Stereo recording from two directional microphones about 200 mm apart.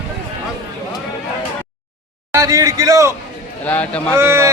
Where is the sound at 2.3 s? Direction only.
15° right (ahead or behind).